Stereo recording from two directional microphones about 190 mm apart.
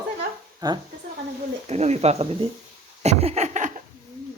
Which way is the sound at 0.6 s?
20° right (ahead or behind).